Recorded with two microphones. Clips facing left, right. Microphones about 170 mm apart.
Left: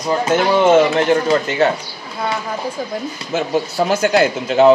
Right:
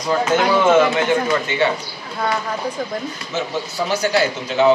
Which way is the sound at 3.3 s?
55° left (ahead or behind).